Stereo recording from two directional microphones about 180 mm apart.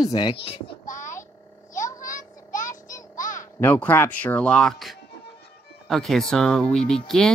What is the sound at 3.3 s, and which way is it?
Speech, 10° left (ahead or behind).